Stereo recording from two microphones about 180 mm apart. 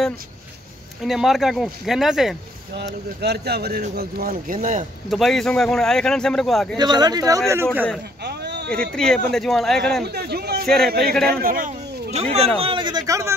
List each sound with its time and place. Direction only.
1.0 s speech: centre (ahead or behind)
2.7 s speech: 65° right (ahead or behind); by 4.8 s 45° right (ahead or behind)
5.1 s speech: centre (ahead or behind)
6.8 s speech: 25° right (ahead or behind)
8.2 s a sound: 65° right (ahead or behind)
8.9 s speech: 5° left (ahead or behind)
10.0 s a man's voice: 65° right (ahead or behind); by 13.3 s 15° right (ahead or behind)